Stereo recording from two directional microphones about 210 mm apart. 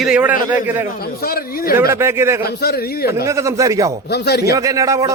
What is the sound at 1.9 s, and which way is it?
Speech, 10° right (ahead or behind).